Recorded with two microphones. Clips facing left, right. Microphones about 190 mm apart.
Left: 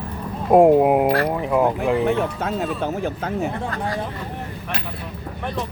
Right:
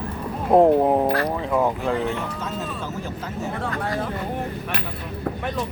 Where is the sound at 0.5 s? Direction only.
10° left (ahead or behind).